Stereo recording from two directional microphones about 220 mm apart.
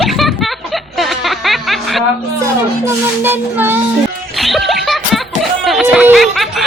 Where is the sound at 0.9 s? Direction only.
Centre (ahead or behind).